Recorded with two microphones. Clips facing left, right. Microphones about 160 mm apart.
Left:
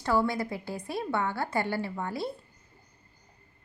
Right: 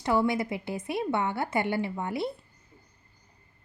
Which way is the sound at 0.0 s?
20° right (ahead or behind).